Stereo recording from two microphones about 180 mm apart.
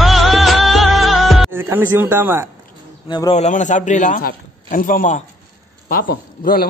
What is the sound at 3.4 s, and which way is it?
A man's voice, 45° left (ahead or behind).